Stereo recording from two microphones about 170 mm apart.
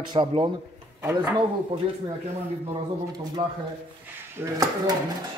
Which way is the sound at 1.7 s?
30° right (ahead or behind).